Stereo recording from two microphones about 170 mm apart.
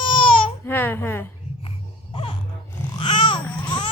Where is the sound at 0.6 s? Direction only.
10° left (ahead or behind).